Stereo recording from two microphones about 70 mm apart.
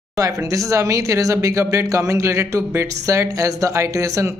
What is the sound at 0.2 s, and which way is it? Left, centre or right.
Speech, right.